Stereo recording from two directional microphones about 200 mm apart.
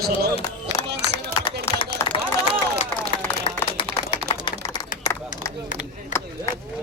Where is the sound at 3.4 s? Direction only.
25° left (ahead or behind).